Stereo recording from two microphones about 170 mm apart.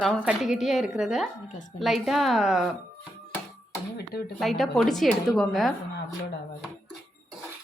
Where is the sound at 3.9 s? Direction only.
65° left (ahead or behind).